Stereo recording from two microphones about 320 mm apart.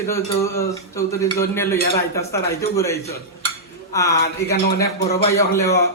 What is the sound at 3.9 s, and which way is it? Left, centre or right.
Speech, centre.